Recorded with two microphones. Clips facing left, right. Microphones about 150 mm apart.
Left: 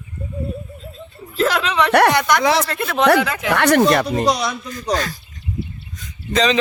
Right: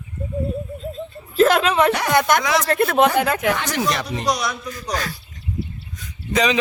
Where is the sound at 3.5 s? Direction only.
65° left (ahead or behind).